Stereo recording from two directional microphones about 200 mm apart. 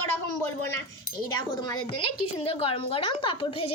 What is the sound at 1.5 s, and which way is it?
A woman's voice, 20° left (ahead or behind).